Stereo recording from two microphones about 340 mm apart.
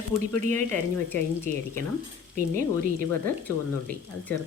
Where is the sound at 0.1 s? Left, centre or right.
Centre.